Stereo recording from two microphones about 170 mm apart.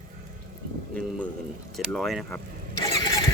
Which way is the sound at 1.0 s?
10° left (ahead or behind).